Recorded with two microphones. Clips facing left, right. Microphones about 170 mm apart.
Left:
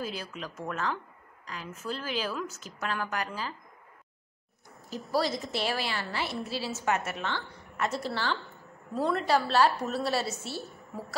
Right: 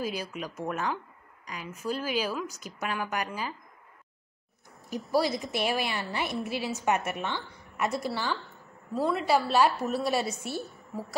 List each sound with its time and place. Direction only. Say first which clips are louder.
0.0 s a woman's voice: right 3 dB; 10° right (ahead or behind)
5.1 s a woman's voice: right 2 dB; 15° right (ahead or behind)
10.7 s a sound: right 2 dB; centre (ahead or behind)